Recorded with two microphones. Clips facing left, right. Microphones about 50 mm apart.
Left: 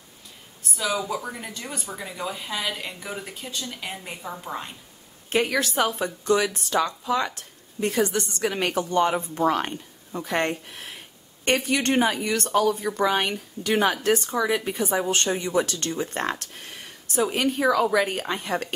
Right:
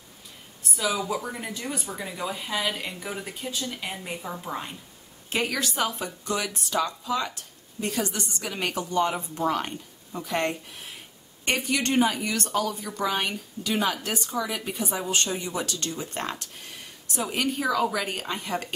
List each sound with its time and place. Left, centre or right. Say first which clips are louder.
0.7 s speech: left 1 dB; centre
5.5 s speech: left 4 dB; left